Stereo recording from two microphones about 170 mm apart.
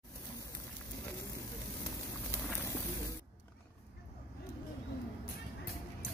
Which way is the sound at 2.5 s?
15° left (ahead or behind).